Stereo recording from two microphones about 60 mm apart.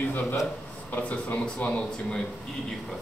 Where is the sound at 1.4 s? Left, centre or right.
Centre.